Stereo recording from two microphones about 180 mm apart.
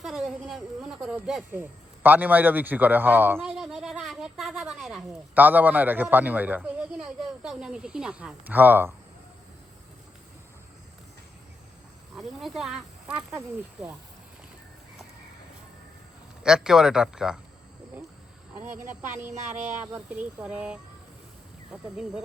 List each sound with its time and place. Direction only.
0.0 s a man's voice: centre (ahead or behind)
12.1 s speech: centre (ahead or behind)
16.4 s speech: 5° right (ahead or behind)
19.7 s speech: 10° right (ahead or behind)